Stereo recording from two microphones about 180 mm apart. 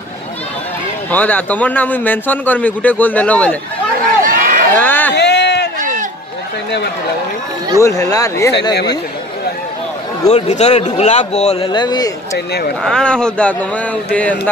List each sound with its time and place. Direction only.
1.1 s a man's voice: 10° left (ahead or behind)
4.2 s run: 45° right (ahead or behind)
4.7 s a sound: 10° left (ahead or behind)
5.1 s a sound: 70° left (ahead or behind)
5.8 s run: 45° right (ahead or behind)
7.8 s speech: 20° left (ahead or behind)
10.2 s speech: 40° left (ahead or behind)
11.7 s speech: 25° left (ahead or behind)
12.8 s a man's voice: 5° left (ahead or behind)